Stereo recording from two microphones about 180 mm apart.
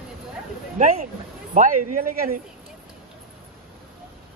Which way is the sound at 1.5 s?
50° right (ahead or behind).